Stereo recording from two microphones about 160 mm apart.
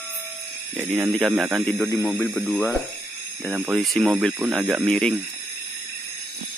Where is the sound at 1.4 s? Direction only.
Centre (ahead or behind).